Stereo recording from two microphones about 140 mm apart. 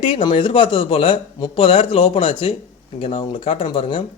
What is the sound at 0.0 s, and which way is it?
Speech, 40° left (ahead or behind).